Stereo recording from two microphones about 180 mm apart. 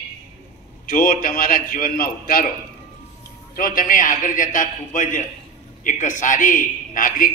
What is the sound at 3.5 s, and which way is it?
A man's voice, 50° left (ahead or behind).